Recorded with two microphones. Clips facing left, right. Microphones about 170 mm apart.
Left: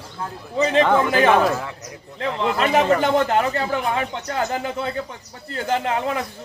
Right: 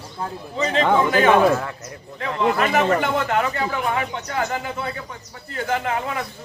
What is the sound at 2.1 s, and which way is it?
Speech, 30° left (ahead or behind).